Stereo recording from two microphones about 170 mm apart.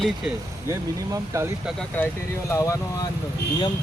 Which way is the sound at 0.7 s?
20° right (ahead or behind).